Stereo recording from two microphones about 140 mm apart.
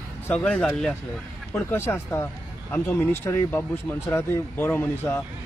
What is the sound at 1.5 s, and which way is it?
Speech, 15° left (ahead or behind).